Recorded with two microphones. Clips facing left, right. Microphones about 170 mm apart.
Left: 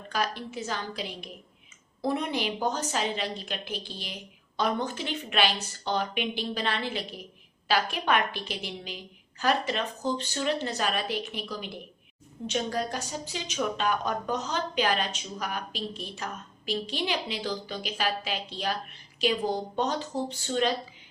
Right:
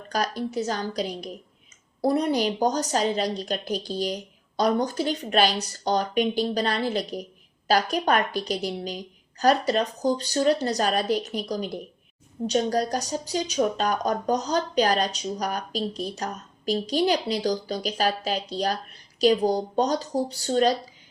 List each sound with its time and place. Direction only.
0.1 s a woman's voice: 40° right (ahead or behind)